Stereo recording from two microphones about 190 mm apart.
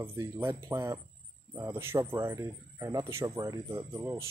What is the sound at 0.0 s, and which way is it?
Speech, 15° right (ahead or behind).